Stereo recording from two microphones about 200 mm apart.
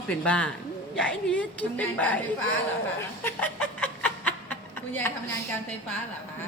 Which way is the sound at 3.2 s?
10° left (ahead or behind).